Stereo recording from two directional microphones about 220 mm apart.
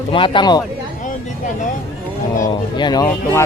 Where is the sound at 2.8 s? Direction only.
20° left (ahead or behind).